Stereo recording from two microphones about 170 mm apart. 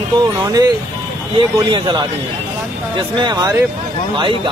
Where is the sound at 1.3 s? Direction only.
25° right (ahead or behind).